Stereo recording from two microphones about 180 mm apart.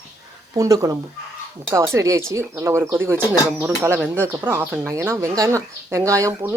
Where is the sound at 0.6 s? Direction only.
20° right (ahead or behind).